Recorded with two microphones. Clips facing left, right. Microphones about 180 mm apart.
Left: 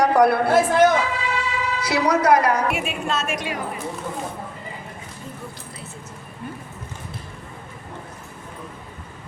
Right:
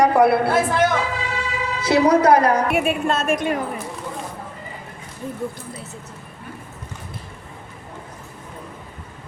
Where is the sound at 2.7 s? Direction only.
55° right (ahead or behind).